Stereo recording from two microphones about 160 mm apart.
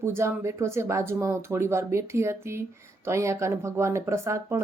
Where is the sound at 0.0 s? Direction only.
15° right (ahead or behind).